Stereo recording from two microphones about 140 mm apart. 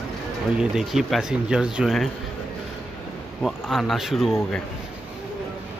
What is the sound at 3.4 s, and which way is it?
Speech, centre (ahead or behind).